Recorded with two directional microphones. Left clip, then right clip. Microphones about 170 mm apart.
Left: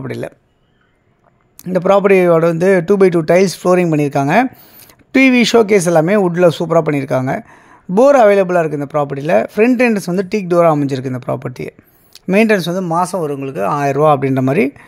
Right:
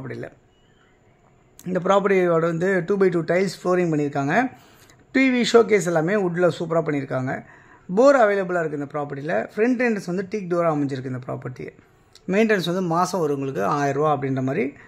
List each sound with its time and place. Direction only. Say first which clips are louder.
0.0 s speech: left 10 dB; 45° left (ahead or behind)
1.6 s speech: left 8 dB; 35° left (ahead or behind)